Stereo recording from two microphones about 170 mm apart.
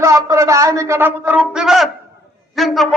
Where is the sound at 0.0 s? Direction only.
15° right (ahead or behind).